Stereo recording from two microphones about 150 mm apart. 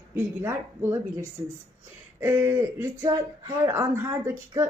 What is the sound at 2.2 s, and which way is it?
Speech, 20° right (ahead or behind).